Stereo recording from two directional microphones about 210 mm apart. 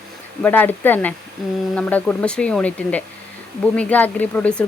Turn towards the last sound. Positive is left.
turn(degrees=5)  # may be behind; listen again after turning